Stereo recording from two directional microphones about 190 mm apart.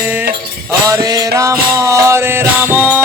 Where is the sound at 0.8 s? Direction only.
20° right (ahead or behind).